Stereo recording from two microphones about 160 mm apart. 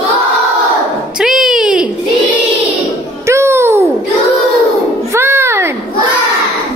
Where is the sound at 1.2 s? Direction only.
5° right (ahead or behind).